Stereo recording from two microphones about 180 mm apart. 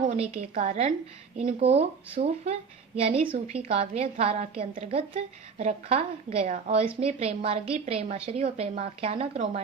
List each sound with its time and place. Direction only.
0.0 s a woman's voice: 35° right (ahead or behind)